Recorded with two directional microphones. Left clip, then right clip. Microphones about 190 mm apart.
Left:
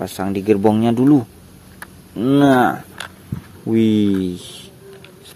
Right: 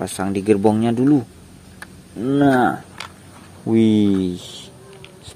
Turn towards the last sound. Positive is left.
turn(degrees=0)  # may be behind; listen again after turning